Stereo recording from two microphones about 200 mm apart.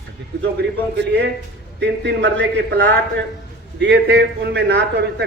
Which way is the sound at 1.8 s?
60° right (ahead or behind).